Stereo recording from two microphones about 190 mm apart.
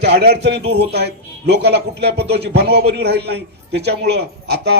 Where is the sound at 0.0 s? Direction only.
60° right (ahead or behind).